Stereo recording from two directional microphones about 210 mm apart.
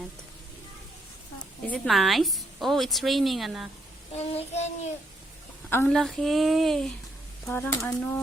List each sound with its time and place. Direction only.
1.6 s a woman's voice: 5° left (ahead or behind)
4.1 s child singing: 30° left (ahead or behind)
5.7 s a woman's voice: 5° left (ahead or behind)